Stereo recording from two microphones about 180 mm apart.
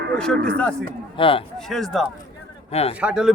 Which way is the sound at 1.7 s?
Centre (ahead or behind).